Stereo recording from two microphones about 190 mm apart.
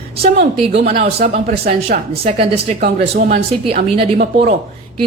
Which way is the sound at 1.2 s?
45° right (ahead or behind).